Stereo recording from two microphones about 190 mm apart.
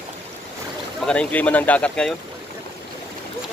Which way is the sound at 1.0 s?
5° left (ahead or behind).